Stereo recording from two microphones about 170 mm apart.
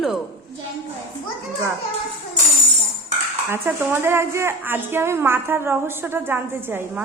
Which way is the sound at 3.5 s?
15° right (ahead or behind).